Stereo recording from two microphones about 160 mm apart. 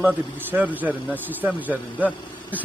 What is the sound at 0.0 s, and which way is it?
A man's voice, 10° right (ahead or behind).